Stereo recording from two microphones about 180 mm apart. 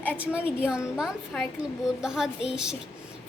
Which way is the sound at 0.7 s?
5° right (ahead or behind).